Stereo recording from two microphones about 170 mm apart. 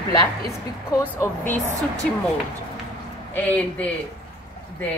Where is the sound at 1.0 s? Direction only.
10° left (ahead or behind).